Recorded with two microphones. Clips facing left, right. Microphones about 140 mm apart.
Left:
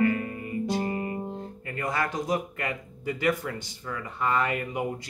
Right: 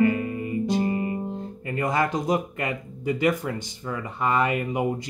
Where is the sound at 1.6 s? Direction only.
20° right (ahead or behind).